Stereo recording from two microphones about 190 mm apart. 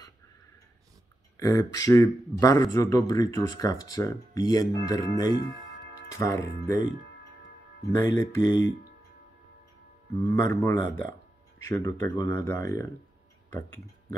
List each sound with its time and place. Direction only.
1.4 s speech: 20° left (ahead or behind)
7.8 s speech: 15° left (ahead or behind)
10.1 s speech: 15° left (ahead or behind)